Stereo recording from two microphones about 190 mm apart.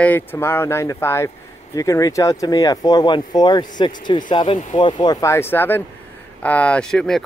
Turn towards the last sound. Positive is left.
turn(degrees=5)  # may be behind; listen again after turning